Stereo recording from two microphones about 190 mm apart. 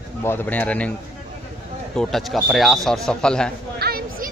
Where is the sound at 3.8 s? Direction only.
55° right (ahead or behind).